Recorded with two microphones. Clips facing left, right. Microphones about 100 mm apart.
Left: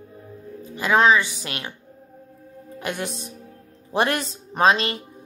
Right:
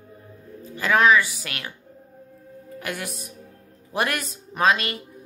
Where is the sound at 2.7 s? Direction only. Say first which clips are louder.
Left 3 dB; 25° left (ahead or behind).